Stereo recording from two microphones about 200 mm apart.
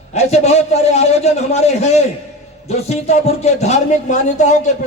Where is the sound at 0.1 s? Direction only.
35° left (ahead or behind).